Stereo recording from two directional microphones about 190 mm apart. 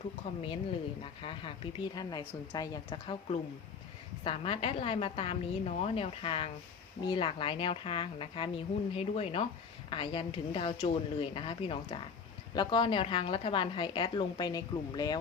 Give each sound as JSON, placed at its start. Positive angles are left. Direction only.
{"t": 0.3, "sound": "a woman's voice", "side_deg": 30}